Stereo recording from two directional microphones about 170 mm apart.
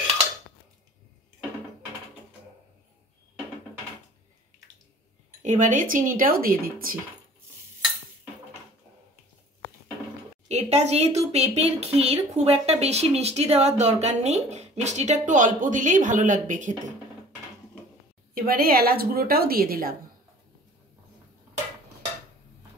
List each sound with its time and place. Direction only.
5.4 s speech: 45° right (ahead or behind)
10.5 s speech: 40° right (ahead or behind)
18.3 s a woman's voice: 60° right (ahead or behind)